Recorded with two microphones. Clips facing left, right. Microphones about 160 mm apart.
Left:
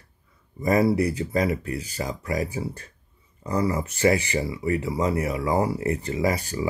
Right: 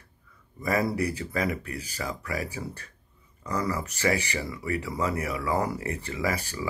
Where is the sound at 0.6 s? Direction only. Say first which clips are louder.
Left 6 dB; 35° left (ahead or behind).